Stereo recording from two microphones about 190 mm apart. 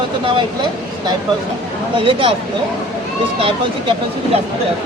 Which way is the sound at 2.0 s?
25° right (ahead or behind).